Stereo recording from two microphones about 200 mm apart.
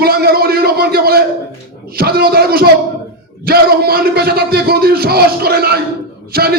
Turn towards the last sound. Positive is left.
turn(degrees=-50)  # may be behind; listen again after turning